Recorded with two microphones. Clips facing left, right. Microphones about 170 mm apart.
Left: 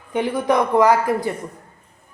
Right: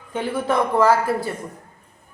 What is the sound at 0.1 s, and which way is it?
Speech, 15° left (ahead or behind).